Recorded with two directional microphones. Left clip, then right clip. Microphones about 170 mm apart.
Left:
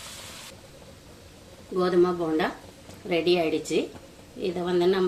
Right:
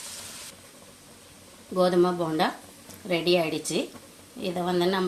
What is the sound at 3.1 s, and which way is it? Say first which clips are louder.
Speech: left 1 dB; 40° right (ahead or behind).